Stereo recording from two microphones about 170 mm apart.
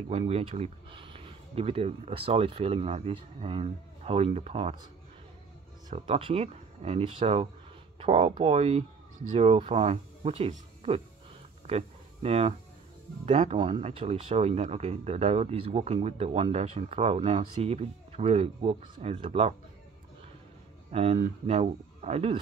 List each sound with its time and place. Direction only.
0.1 s speech: 35° right (ahead or behind)
6.0 s speech: 30° right (ahead or behind)
11.6 s a sound: 40° right (ahead or behind)
13.2 s speech: 40° right (ahead or behind)
20.9 s speech: 35° right (ahead or behind)